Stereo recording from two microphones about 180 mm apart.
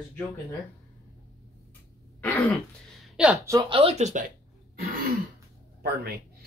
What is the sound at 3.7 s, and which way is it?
Speech, 35° right (ahead or behind).